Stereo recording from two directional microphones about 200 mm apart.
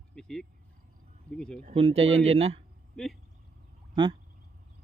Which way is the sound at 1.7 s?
30° right (ahead or behind).